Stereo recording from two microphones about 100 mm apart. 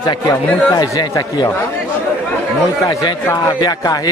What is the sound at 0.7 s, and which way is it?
Speech, 40° left (ahead or behind).